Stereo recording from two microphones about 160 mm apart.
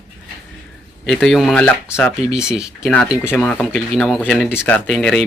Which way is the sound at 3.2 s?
10° left (ahead or behind).